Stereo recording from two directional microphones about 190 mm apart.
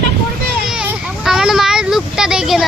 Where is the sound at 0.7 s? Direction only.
5° right (ahead or behind).